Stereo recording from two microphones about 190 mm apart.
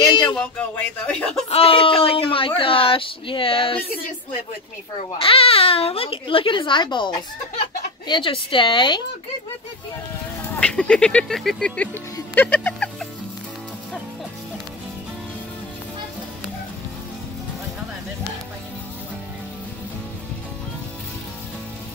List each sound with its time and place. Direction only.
0.0 s a sound: 25° left (ahead or behind)
0.4 s speech: 5° left (ahead or behind)
1.5 s speech: 30° left (ahead or behind)
5.2 s speech: 30° left (ahead or behind)
10.5 s speech: 5° left (ahead or behind)
12.4 s a sound: 10° left (ahead or behind)